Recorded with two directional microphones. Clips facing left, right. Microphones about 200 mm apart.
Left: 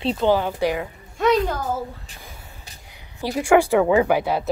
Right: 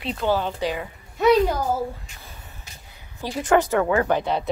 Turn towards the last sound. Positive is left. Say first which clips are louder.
# left 2 dB
turn(degrees=5)  # may be behind; listen again after turning